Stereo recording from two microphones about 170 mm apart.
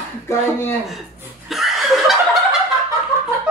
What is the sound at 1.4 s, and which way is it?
Snicker, centre (ahead or behind).